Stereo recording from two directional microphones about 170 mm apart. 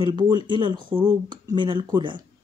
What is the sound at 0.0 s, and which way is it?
A woman's voice, 25° right (ahead or behind).